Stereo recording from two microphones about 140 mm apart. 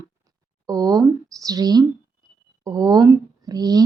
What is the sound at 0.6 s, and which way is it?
A woman's voice, 25° right (ahead or behind).